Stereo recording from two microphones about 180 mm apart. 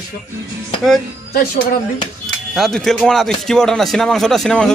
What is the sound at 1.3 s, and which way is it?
Speech, 55° left (ahead or behind).